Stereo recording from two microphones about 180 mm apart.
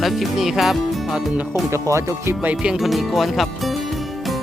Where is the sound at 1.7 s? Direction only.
15° right (ahead or behind).